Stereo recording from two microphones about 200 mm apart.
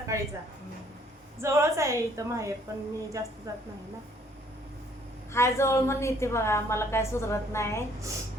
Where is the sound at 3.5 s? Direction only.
15° right (ahead or behind).